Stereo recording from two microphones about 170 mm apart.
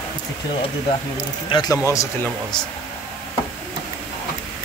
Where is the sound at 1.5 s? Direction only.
25° left (ahead or behind).